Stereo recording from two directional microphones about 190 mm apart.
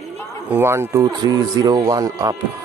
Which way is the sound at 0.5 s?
15° right (ahead or behind).